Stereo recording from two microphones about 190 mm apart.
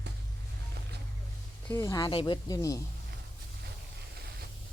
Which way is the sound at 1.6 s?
15° left (ahead or behind).